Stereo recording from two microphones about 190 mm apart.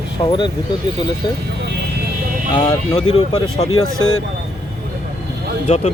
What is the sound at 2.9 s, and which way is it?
Speech, 30° left (ahead or behind).